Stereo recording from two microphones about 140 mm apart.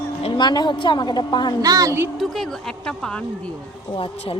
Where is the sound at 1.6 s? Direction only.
25° right (ahead or behind).